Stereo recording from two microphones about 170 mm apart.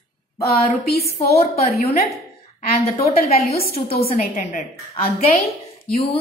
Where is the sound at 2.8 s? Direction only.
35° left (ahead or behind).